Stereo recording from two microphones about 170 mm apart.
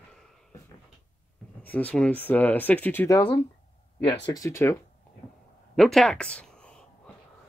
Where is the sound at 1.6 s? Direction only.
10° left (ahead or behind).